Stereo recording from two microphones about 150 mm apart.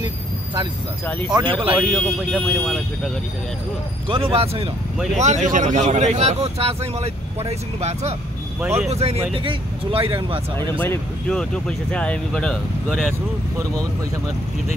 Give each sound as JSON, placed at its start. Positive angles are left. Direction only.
{"t": 1.3, "sound": "speech", "side_deg": -35}
{"t": 1.8, "sound": "speech", "side_deg": 0}
{"t": 4.1, "sound": "speech", "side_deg": -40}
{"t": 5.1, "sound": "speech", "side_deg": -50}
{"t": 10.8, "sound": "speech", "side_deg": 10}